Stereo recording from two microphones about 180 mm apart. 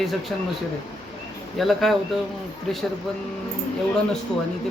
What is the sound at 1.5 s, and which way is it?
Speech, centre (ahead or behind).